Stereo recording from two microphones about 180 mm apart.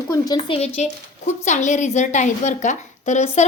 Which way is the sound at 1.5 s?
40° left (ahead or behind).